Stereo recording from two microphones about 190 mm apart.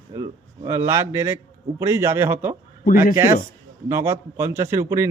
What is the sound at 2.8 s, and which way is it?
Speech, 50° left (ahead or behind).